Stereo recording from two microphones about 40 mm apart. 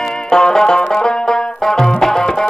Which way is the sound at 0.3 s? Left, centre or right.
Centre.